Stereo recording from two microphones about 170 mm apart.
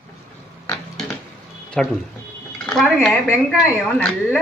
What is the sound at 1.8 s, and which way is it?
Speech, 5° left (ahead or behind).